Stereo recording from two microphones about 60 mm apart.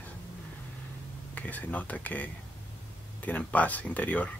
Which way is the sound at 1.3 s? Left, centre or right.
Left.